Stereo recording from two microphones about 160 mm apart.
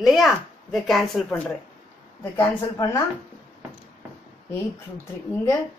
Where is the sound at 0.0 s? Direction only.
Centre (ahead or behind).